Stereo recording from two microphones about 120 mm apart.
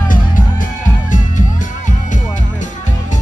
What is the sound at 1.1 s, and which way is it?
Music, 90° left.